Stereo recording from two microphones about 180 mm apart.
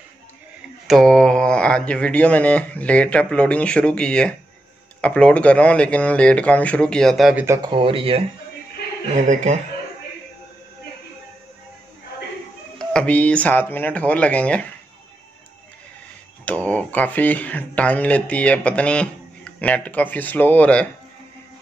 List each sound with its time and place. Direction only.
0.8 s speech: centre (ahead or behind)
7.4 s speech: 15° right (ahead or behind)
7.7 s speech: 30° right (ahead or behind)
9.3 s speech: 40° right (ahead or behind)
12.7 s speech: 5° left (ahead or behind)
16.4 s speech: 5° left (ahead or behind)